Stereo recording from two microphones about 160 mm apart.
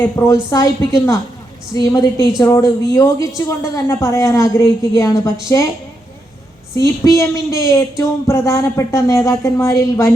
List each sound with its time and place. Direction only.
0.0 s a woman's voice: 15° left (ahead or behind)
6.7 s a woman's voice: 20° left (ahead or behind)